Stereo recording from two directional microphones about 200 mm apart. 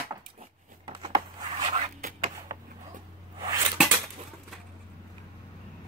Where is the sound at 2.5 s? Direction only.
20° right (ahead or behind).